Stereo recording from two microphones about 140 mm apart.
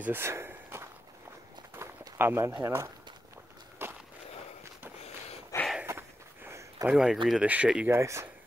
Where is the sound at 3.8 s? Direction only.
15° right (ahead or behind).